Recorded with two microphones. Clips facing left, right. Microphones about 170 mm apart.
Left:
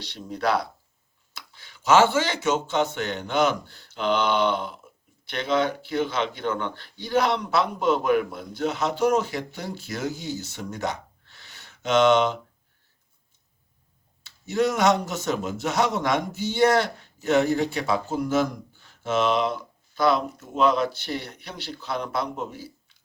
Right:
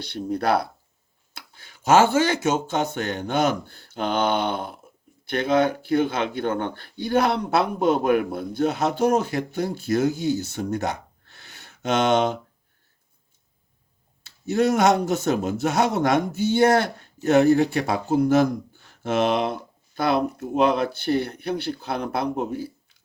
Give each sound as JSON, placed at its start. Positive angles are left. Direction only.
{"t": 0.0, "sound": "a man's voice", "side_deg": -55}
{"t": 14.3, "sound": "a man's voice", "side_deg": -55}